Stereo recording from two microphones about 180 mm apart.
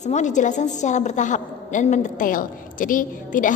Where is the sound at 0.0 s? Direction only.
40° left (ahead or behind).